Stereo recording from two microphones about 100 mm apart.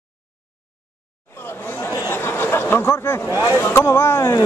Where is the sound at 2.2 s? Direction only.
25° left (ahead or behind).